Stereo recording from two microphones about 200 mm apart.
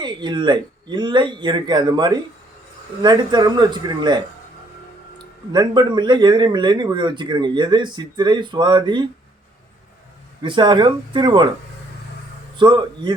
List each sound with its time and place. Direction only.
0.0 s speech: 20° right (ahead or behind)
10.4 s speech: 25° right (ahead or behind)
12.5 s speech: 25° right (ahead or behind)